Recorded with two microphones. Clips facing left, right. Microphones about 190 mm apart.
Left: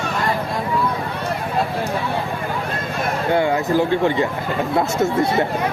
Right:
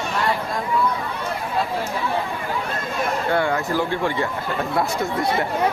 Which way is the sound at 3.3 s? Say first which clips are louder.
Left 6 dB; 20° left (ahead or behind).